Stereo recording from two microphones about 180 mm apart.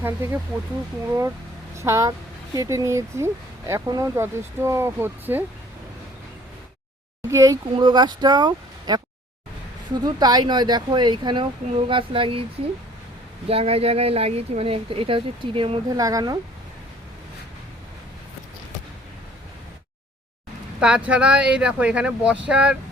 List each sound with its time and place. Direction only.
0.0 s speech: 15° right (ahead or behind)
1.7 s speech: 15° right (ahead or behind)
7.3 s speech: 15° right (ahead or behind)
10.0 s speech: 20° right (ahead or behind)
20.7 s speech: 5° right (ahead or behind)